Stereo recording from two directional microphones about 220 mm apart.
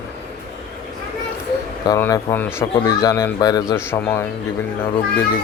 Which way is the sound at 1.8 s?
15° left (ahead or behind).